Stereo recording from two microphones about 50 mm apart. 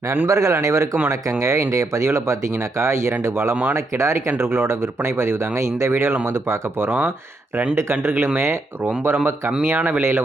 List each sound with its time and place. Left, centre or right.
0.3 s a man's voice: right
4.4 s speech: right
5.9 s speech: right